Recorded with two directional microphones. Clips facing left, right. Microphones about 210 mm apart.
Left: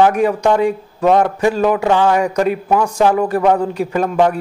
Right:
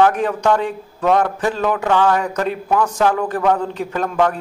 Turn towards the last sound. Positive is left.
turn(degrees=10)  # may be behind; listen again after turning